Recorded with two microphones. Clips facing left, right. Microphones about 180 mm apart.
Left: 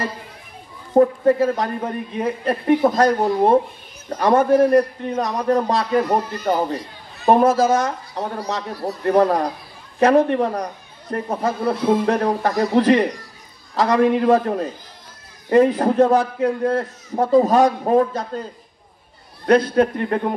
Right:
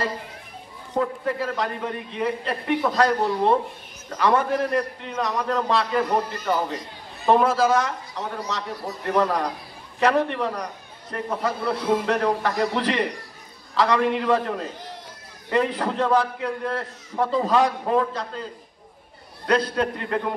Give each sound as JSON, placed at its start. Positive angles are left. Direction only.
{"t": 0.9, "sound": "a man's voice", "side_deg": 45}
{"t": 19.7, "sound": "a man's voice", "side_deg": 40}